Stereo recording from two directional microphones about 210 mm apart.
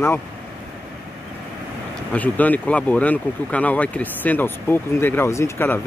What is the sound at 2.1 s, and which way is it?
Speech, 10° left (ahead or behind).